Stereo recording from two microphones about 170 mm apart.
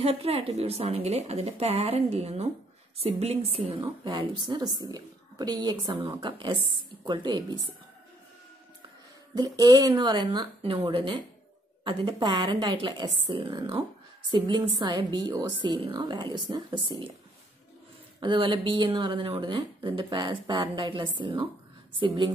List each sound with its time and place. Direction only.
0.0 s a woman's voice: 35° right (ahead or behind)
9.3 s a woman's voice: 20° right (ahead or behind)
18.2 s speech: 30° right (ahead or behind)